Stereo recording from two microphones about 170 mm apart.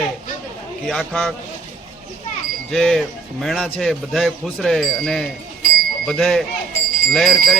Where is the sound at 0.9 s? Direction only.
Centre (ahead or behind).